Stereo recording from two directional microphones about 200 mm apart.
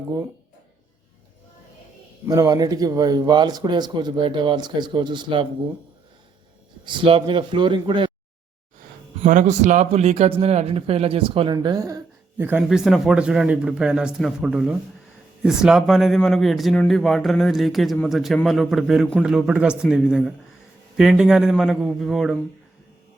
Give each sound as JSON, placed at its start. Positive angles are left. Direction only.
{"t": 2.2, "sound": "a man's voice", "side_deg": -15}
{"t": 6.8, "sound": "a man's voice", "side_deg": -25}
{"t": 9.2, "sound": "a man's voice", "side_deg": -40}